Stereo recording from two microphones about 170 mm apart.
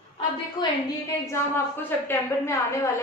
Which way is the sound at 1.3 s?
15° left (ahead or behind).